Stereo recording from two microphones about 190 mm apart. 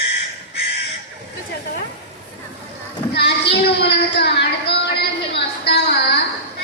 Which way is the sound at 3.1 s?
60° left (ahead or behind).